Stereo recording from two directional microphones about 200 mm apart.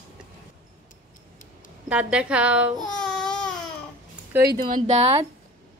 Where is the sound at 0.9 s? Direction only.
40° left (ahead or behind).